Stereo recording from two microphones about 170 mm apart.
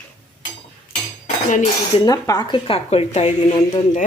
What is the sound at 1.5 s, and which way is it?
Speech, 45° left (ahead or behind).